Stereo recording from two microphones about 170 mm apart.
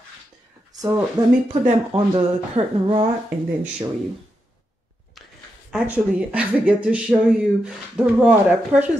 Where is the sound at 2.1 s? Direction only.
35° right (ahead or behind).